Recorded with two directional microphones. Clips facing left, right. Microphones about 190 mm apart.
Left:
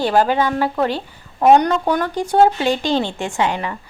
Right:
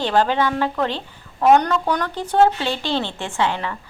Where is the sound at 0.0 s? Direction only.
10° left (ahead or behind).